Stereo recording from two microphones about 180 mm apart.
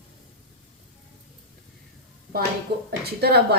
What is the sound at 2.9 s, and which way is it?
Speech, 60° right (ahead or behind).